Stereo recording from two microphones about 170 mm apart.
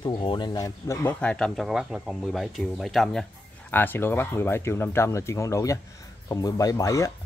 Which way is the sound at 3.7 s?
10° left (ahead or behind).